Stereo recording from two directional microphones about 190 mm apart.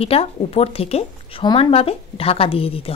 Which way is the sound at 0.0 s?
30° left (ahead or behind).